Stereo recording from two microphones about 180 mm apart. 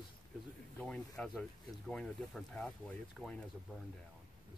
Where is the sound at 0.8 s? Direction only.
5° left (ahead or behind).